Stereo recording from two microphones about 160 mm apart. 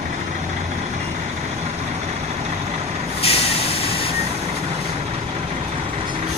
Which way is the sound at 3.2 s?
35° left (ahead or behind).